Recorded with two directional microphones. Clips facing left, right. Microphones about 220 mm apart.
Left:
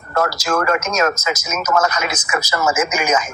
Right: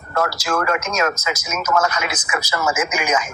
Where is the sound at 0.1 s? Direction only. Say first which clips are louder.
Left 2 dB; 40° left (ahead or behind).